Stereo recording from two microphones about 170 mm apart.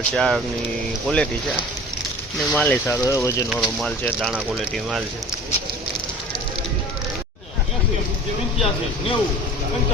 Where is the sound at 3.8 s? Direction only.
Centre (ahead or behind).